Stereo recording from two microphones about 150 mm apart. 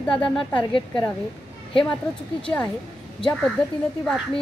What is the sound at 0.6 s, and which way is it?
Speech, 35° left (ahead or behind).